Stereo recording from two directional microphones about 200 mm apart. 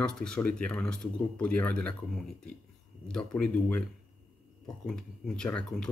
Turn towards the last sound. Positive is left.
turn(degrees=5)  # may be behind; listen again after turning